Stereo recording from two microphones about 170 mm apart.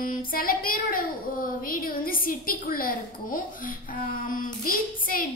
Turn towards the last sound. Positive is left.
turn(degrees=55)  # may be behind; listen again after turning